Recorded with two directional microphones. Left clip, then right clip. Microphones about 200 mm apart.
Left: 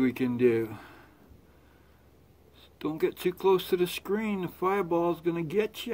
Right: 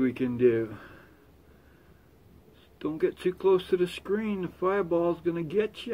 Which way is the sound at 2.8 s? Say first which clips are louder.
Right 1 dB; 50° left (ahead or behind).